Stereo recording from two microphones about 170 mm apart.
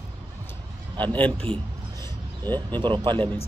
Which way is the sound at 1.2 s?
10° left (ahead or behind).